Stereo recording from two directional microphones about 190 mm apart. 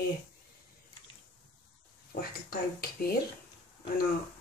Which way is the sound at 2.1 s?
50° left (ahead or behind).